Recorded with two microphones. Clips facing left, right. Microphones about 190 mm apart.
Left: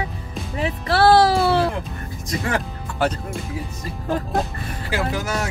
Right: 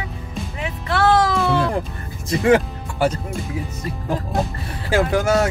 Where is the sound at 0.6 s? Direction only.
35° left (ahead or behind).